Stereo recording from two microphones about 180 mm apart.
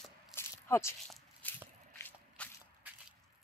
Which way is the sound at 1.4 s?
10° left (ahead or behind).